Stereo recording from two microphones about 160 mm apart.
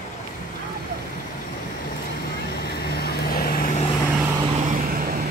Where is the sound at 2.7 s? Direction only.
80° left.